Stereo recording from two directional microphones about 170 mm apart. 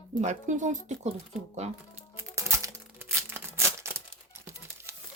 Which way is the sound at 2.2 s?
15° right (ahead or behind).